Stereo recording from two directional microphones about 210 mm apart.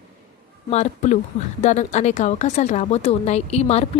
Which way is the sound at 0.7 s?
35° left (ahead or behind).